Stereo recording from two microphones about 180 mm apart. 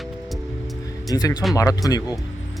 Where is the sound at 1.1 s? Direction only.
20° left (ahead or behind).